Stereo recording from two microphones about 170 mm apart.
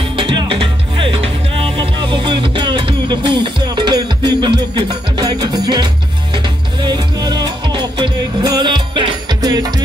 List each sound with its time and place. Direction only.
0.0 s music: 30° right (ahead or behind)